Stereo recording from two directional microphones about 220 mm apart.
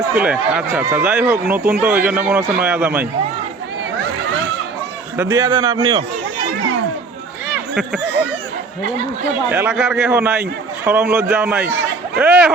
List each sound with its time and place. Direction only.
0.1 s speech: 5° right (ahead or behind)
5.1 s a man's voice: 15° right (ahead or behind)
9.5 s speech: 10° right (ahead or behind)